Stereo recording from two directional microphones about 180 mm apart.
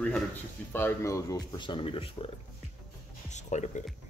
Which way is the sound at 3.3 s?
40° left (ahead or behind).